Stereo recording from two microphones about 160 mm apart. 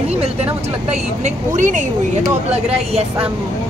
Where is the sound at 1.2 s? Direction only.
50° right (ahead or behind).